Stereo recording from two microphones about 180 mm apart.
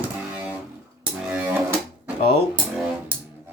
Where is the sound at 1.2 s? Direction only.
10° right (ahead or behind).